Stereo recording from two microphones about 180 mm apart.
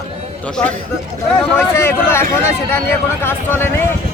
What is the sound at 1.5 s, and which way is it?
A man's voice, 15° left (ahead or behind).